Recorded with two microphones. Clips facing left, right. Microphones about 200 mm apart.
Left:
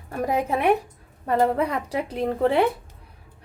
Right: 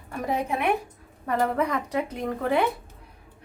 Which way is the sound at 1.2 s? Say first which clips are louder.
Left 3 dB; 30° left (ahead or behind).